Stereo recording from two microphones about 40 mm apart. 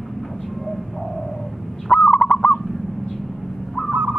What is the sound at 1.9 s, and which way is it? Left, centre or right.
Owl, left.